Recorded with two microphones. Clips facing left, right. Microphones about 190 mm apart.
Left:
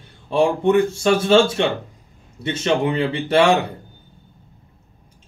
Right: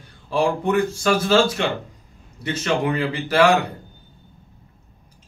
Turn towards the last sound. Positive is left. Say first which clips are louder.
# left 1 dB
turn(degrees=25)  # may be behind; listen again after turning